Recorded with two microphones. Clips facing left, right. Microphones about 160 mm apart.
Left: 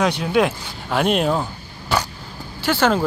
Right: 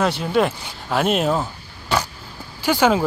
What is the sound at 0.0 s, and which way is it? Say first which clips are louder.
Speech: left 1 dB; centre (ahead or behind).